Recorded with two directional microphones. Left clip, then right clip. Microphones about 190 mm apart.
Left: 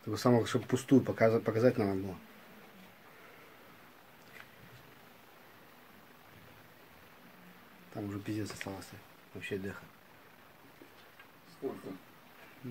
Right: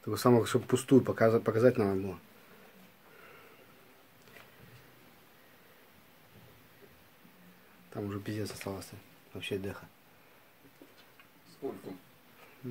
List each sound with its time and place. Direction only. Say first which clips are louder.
0.1 s speech: right 3 dB; 15° right (ahead or behind)
7.9 s speech: right 1 dB; 30° right (ahead or behind)